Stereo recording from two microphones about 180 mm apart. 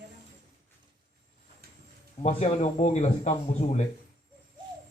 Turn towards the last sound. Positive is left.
turn(degrees=40)  # may be behind; listen again after turning